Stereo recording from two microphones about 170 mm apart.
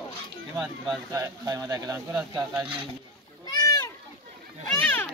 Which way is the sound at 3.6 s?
20° left (ahead or behind).